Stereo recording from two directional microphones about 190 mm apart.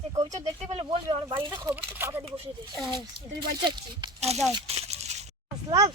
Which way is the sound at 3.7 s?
30° right (ahead or behind).